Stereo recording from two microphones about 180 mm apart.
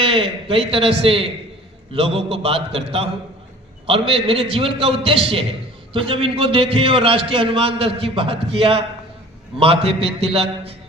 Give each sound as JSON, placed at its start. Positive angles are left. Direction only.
{"t": 0.0, "sound": "a man's voice", "side_deg": -30}